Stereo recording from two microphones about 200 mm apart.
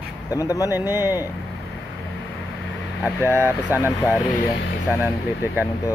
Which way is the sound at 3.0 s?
10° right (ahead or behind).